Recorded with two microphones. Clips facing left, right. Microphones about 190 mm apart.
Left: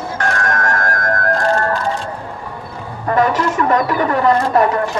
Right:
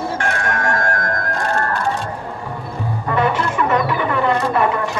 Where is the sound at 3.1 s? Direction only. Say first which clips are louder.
Left 3 dB; 40° left (ahead or behind).